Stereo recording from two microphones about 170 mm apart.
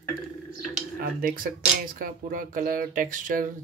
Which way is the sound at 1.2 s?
60° right (ahead or behind).